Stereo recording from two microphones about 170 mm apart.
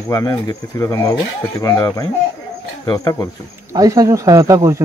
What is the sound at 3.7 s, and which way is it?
Speech, 20° right (ahead or behind).